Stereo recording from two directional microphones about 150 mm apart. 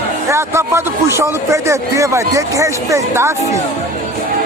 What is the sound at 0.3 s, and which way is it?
Speech, 20° right (ahead or behind).